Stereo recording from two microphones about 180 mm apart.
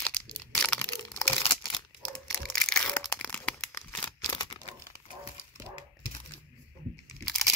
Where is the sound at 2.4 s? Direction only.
5° left (ahead or behind).